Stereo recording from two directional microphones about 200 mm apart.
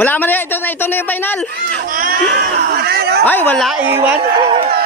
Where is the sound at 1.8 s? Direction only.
45° right (ahead or behind).